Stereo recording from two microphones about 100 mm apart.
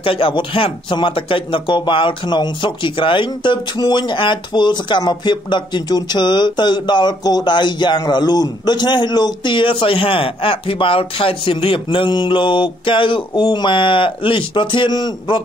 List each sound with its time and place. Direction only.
0.0 s speech: 65° left (ahead or behind); by 15.4 s 45° left (ahead or behind)